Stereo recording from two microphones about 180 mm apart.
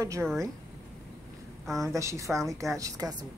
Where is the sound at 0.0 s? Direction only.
15° right (ahead or behind).